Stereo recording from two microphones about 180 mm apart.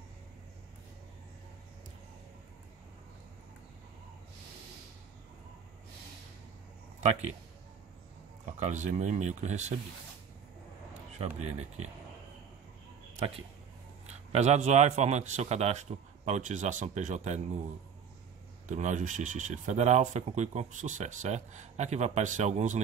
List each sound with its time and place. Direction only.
8.5 s speech: 40° right (ahead or behind)
11.1 s speech: 35° right (ahead or behind)
14.0 s speech: 40° right (ahead or behind)
18.7 s speech: 40° right (ahead or behind)